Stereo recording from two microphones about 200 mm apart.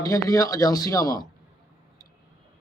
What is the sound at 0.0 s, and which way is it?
A man's voice, 15° left (ahead or behind).